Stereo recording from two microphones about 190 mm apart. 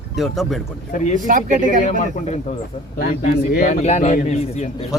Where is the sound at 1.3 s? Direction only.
45° right (ahead or behind).